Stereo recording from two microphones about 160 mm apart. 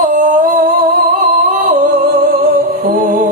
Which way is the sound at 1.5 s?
60° right (ahead or behind).